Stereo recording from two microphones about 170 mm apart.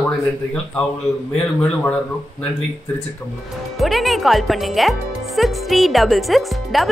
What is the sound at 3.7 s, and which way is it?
Speech, centre (ahead or behind).